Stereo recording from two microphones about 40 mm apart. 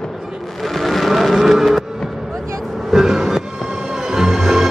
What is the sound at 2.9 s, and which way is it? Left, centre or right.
Music, centre.